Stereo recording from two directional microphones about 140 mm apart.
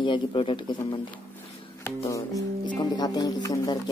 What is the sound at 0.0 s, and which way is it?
Speech, 35° left (ahead or behind).